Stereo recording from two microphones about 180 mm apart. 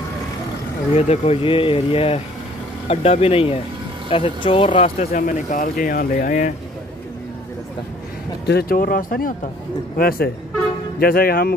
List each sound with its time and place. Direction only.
0.9 s speech: 35° left (ahead or behind)
5.1 s speech: 45° left (ahead or behind)
8.5 s speech: 60° left (ahead or behind)